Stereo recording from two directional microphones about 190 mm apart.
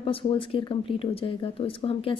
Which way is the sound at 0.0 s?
30° left (ahead or behind).